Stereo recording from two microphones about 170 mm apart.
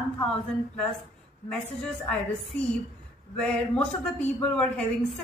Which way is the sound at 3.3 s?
5° left (ahead or behind).